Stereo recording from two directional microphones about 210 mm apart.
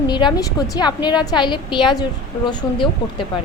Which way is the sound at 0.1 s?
20° left (ahead or behind).